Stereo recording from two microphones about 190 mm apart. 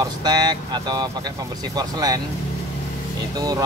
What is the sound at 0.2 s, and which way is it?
Speech, 20° right (ahead or behind).